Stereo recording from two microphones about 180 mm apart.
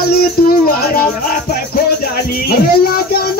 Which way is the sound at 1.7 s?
60° left (ahead or behind).